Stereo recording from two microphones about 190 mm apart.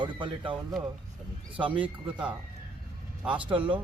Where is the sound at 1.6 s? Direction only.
25° right (ahead or behind).